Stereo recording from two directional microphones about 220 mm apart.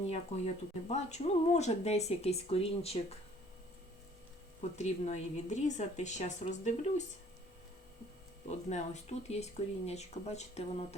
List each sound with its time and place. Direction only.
0.1 s speech: 30° left (ahead or behind)
4.8 s speech: 30° left (ahead or behind)
8.4 s speech: 30° left (ahead or behind)